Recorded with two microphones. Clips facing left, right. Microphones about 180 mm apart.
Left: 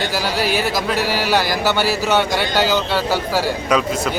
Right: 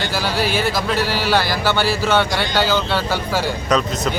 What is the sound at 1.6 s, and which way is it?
Music, 40° left (ahead or behind).